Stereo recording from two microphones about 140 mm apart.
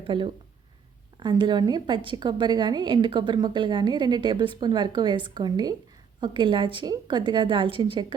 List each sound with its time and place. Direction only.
0.0 s a woman's voice: 35° right (ahead or behind)